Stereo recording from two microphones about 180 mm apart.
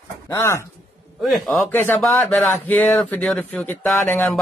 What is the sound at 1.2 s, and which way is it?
Speech, centre (ahead or behind).